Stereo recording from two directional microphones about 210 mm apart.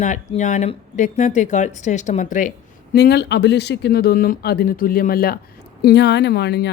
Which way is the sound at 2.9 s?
50° left (ahead or behind).